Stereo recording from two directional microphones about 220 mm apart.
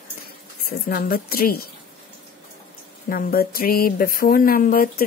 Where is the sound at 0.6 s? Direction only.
45° left (ahead or behind).